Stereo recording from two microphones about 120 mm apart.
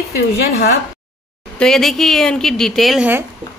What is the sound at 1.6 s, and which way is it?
Speech, 5° left (ahead or behind).